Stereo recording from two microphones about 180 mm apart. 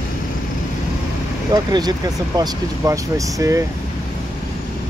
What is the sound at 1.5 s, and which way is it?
Speech, 20° right (ahead or behind).